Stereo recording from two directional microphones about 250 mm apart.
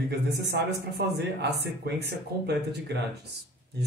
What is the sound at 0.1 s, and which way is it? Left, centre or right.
Speech, right.